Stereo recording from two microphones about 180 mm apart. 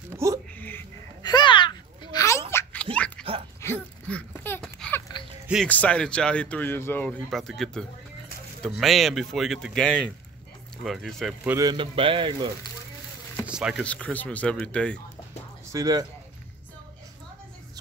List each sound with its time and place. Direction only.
0.1 s a sound: 15° right (ahead or behind)
0.6 s hiccup: 10° left (ahead or behind)
1.2 s a sound: 25° left (ahead or behind); by 5.0 s 10° left (ahead or behind)
5.7 s speech: 10° left (ahead or behind)
11.4 s a man's voice: 15° right (ahead or behind)
11.7 s speech: 30° right (ahead or behind)
13.5 s speech: 5° right (ahead or behind)
13.8 s speech: 5° left (ahead or behind)
15.7 s speech: 20° right (ahead or behind)